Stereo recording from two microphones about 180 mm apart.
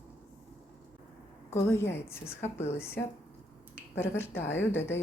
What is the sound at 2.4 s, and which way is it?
Speech, 35° left (ahead or behind).